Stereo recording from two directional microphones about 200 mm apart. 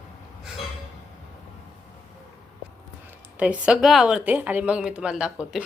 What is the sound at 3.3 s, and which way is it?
A woman's voice, 5° right (ahead or behind).